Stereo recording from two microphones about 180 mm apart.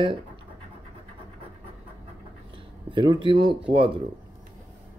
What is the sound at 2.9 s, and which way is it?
Speech, 25° right (ahead or behind).